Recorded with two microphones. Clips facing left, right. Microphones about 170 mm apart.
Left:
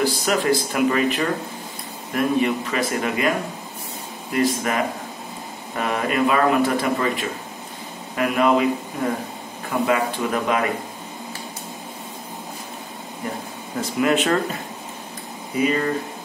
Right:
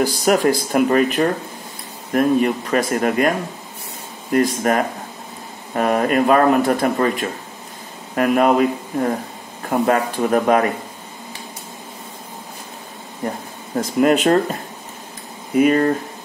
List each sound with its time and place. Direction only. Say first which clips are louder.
0.0 s speech: right 5 dB; 45° right (ahead or behind)
4.3 s speech: right 4 dB; 45° right (ahead or behind)
9.7 s speech: right 3 dB; 45° right (ahead or behind)
13.2 s speech: right 4 dB; 40° right (ahead or behind)
15.5 s speech: right 7 dB; 50° right (ahead or behind)